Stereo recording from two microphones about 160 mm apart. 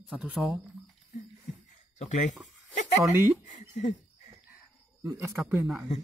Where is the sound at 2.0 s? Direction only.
45° left (ahead or behind).